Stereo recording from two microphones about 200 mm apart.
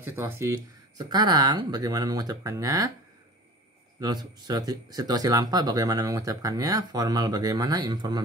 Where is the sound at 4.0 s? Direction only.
20° right (ahead or behind).